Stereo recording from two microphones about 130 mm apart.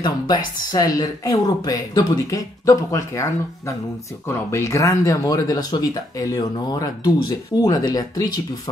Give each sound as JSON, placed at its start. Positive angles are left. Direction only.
{"t": 0.7, "sound": "speech", "side_deg": 30}